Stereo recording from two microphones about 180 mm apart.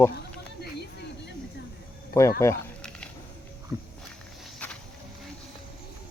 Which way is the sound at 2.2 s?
15° left (ahead or behind).